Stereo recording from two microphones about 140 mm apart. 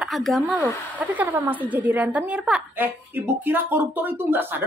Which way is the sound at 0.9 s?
10° right (ahead or behind).